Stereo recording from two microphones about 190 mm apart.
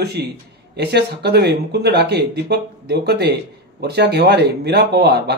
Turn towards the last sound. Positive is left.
turn(degrees=-60)  # may be behind; listen again after turning